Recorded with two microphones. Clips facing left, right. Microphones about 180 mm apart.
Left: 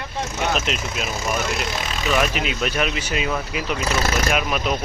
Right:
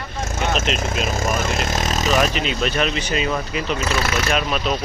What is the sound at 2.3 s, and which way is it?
Speech, 5° left (ahead or behind).